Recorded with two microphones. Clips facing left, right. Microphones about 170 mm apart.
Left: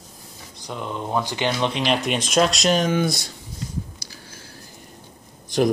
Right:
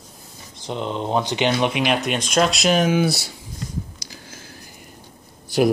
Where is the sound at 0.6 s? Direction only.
25° right (ahead or behind).